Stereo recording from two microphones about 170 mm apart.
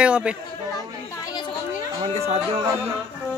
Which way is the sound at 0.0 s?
5° right (ahead or behind).